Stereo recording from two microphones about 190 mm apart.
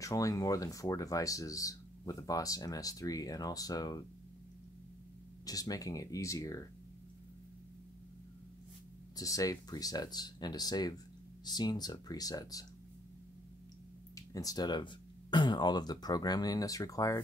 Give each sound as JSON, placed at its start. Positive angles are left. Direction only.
{"t": 0.0, "sound": "speech", "side_deg": 15}
{"t": 5.4, "sound": "speech", "side_deg": 20}
{"t": 9.1, "sound": "speech", "side_deg": 20}
{"t": 14.1, "sound": "speech", "side_deg": 20}